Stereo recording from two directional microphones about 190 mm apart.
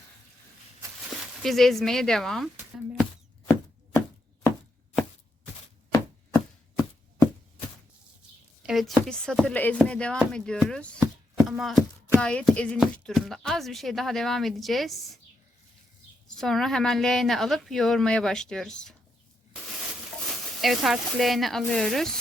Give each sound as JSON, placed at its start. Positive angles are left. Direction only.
{"t": 1.4, "sound": "speech", "side_deg": 0}
{"t": 5.9, "sound": "chopping", "side_deg": 15}
{"t": 8.6, "sound": "speech", "side_deg": 0}
{"t": 11.0, "sound": "chopping", "side_deg": -5}
{"t": 12.1, "sound": "speech", "side_deg": 5}
{"t": 16.3, "sound": "speech", "side_deg": 0}
{"t": 20.1, "sound": "speech", "side_deg": 0}